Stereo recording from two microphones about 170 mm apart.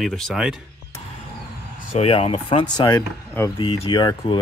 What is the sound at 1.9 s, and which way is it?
Speech, 35° left (ahead or behind).